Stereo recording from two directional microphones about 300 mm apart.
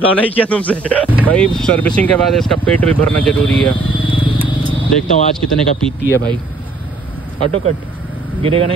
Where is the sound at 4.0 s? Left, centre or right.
Centre.